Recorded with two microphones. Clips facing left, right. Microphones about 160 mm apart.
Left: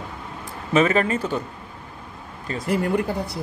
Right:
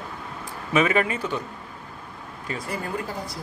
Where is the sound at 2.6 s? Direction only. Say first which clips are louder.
Left 10 dB; 70° left (ahead or behind).